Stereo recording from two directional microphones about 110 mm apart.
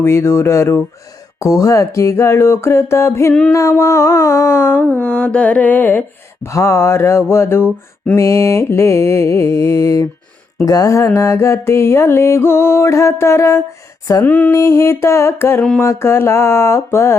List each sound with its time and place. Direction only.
0.0 s mantra: 25° left (ahead or behind)
14.3 s a sound: 15° left (ahead or behind)
14.5 s mantra: 25° left (ahead or behind)